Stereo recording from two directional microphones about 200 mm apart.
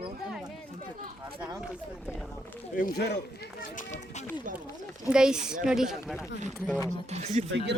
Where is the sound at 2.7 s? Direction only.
45° left (ahead or behind).